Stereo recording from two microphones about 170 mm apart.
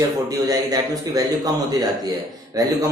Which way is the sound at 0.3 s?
20° right (ahead or behind).